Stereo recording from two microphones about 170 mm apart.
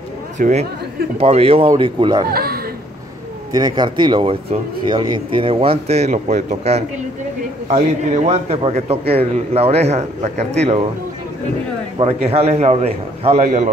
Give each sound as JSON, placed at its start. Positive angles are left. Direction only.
{"t": 0.4, "sound": "speech", "side_deg": -45}
{"t": 2.2, "sound": "a man's voice", "side_deg": -60}
{"t": 3.5, "sound": "speech", "side_deg": -25}
{"t": 12.0, "sound": "speech", "side_deg": -35}